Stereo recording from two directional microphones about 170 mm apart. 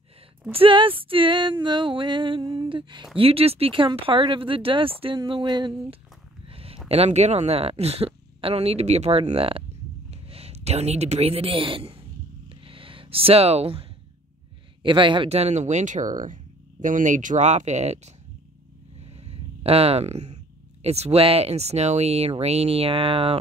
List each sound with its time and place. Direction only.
0.5 s female singing: 30° right (ahead or behind)
3.2 s speech: 35° right (ahead or behind)
5.3 s female singing: 30° right (ahead or behind)
6.4 s a sound: 35° right (ahead or behind)
6.9 s a woman's voice: 40° right (ahead or behind)
12.4 s a sound: 30° right (ahead or behind)
14.8 s speech: 30° right (ahead or behind)
18.9 s a sound: 40° right (ahead or behind)
20.8 s speech: 35° right (ahead or behind)